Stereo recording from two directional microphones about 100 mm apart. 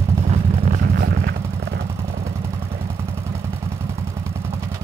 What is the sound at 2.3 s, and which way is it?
Vehicle, 30° right (ahead or behind).